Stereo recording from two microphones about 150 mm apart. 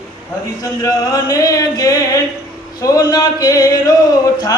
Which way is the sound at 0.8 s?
25° left (ahead or behind).